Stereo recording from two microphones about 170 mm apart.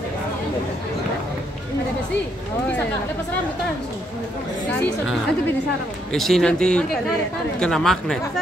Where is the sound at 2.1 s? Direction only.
90° left.